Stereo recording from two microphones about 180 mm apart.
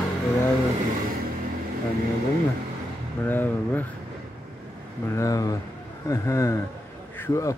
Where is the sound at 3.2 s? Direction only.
10° left (ahead or behind).